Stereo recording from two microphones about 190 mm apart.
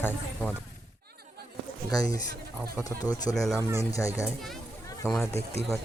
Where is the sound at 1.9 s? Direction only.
20° left (ahead or behind).